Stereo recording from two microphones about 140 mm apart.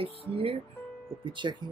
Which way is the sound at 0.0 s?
40° right (ahead or behind).